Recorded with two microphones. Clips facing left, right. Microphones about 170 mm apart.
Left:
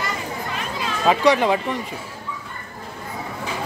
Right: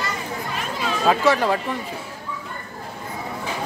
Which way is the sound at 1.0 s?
Centre (ahead or behind).